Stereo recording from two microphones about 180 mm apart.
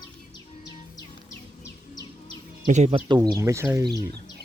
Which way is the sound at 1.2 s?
20° left (ahead or behind).